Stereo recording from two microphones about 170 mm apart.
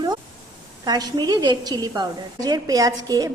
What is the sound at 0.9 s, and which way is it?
A woman's voice, 25° right (ahead or behind).